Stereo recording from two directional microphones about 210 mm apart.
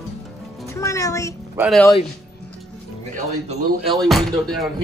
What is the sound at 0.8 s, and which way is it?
Speech, 15° left (ahead or behind).